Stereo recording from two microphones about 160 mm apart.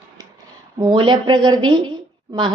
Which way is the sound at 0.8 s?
30° right (ahead or behind).